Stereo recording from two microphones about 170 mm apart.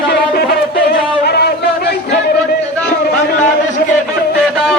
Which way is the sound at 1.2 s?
70° left (ahead or behind).